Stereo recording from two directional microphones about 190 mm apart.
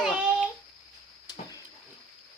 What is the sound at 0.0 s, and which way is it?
Child singing, 5° right (ahead or behind).